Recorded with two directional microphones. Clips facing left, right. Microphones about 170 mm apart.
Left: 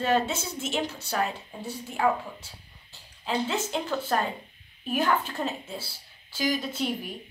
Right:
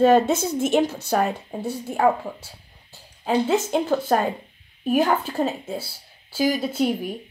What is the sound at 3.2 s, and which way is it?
A woman's voice, 45° right (ahead or behind).